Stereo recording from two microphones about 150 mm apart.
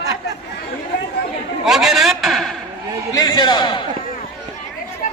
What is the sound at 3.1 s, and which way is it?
Speech, 25° left (ahead or behind).